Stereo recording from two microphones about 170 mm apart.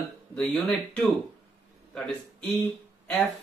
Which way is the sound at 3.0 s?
Centre (ahead or behind).